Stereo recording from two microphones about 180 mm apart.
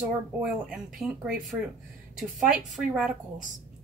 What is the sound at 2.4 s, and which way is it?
Speech, centre (ahead or behind).